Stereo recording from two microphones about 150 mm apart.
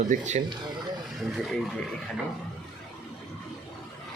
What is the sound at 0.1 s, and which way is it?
Speech, 50° right (ahead or behind).